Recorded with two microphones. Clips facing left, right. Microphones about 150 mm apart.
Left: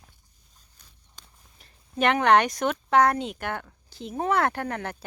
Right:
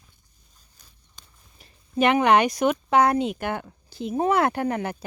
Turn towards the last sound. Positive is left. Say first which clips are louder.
# right 5 dB
turn(degrees=-10)  # may be behind; listen again after turning